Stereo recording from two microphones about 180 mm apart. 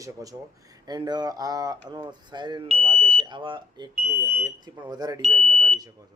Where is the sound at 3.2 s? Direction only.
25° right (ahead or behind).